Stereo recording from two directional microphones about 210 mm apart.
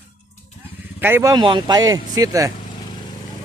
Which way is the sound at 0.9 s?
10° right (ahead or behind).